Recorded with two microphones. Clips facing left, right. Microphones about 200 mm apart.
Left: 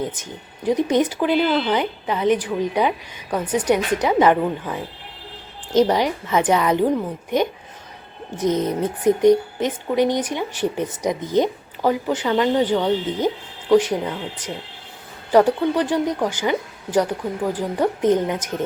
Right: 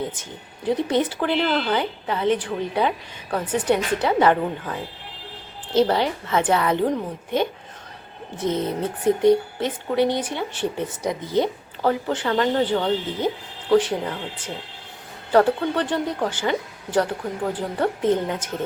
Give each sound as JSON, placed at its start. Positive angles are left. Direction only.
{"t": 0.2, "sound": "speech", "side_deg": 15}
{"t": 15.3, "sound": "speech", "side_deg": 15}